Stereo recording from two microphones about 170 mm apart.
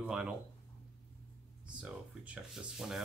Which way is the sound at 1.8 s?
5° right (ahead or behind).